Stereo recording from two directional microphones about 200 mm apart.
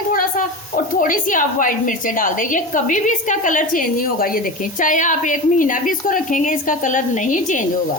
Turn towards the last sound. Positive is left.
turn(degrees=40)  # may be behind; listen again after turning